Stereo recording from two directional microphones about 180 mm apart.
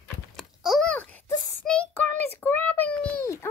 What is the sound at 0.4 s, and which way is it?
Babbling, centre (ahead or behind).